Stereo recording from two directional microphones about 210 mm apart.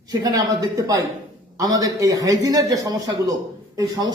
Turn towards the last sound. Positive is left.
turn(degrees=-15)  # may be behind; listen again after turning